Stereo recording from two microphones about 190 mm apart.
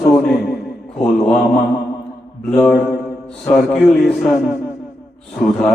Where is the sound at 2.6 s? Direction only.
Centre (ahead or behind).